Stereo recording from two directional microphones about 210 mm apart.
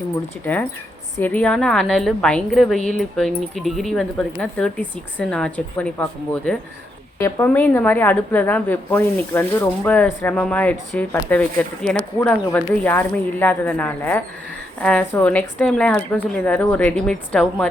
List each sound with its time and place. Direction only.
1.2 s a woman's voice: 5° left (ahead or behind)